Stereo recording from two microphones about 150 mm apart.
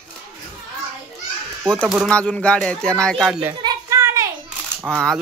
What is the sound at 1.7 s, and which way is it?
Speech, centre (ahead or behind).